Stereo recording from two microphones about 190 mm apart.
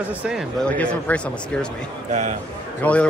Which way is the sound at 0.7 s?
5° left (ahead or behind).